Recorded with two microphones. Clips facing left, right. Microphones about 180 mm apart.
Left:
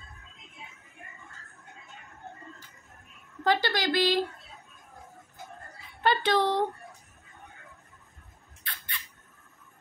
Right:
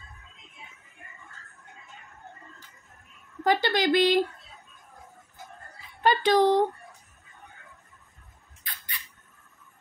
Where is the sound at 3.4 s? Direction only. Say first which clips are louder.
Right 3 dB; 20° right (ahead or behind).